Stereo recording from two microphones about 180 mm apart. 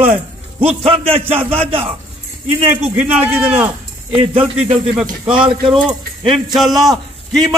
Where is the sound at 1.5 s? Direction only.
30° right (ahead or behind).